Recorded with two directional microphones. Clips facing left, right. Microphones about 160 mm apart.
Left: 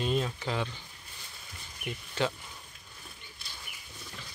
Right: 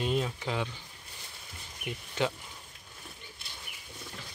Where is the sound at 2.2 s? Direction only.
15° right (ahead or behind).